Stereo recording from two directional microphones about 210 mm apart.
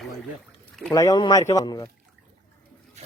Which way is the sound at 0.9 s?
15° left (ahead or behind).